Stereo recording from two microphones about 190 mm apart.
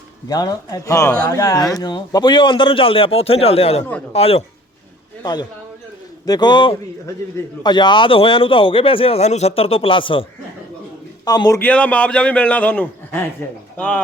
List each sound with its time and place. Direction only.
0.3 s a man's voice: 20° left (ahead or behind)
5.2 s a man's voice: 20° left (ahead or behind)
11.3 s a man's voice: 20° left (ahead or behind)